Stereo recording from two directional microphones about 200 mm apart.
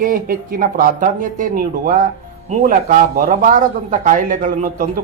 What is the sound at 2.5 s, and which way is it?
Speech, 40° right (ahead or behind).